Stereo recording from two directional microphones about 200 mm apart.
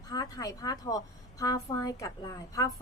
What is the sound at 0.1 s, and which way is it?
A woman's voice, 20° left (ahead or behind).